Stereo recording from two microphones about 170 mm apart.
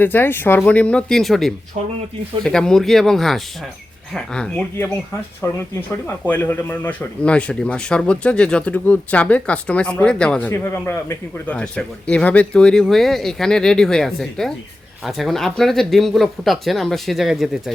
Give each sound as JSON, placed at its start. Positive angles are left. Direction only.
{"t": 0.0, "sound": "speech", "side_deg": 10}
{"t": 5.4, "sound": "speech", "side_deg": 20}